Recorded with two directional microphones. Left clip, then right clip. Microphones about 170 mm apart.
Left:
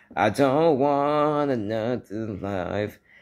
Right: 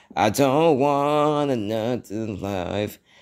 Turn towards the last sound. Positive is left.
turn(degrees=-35)  # may be behind; listen again after turning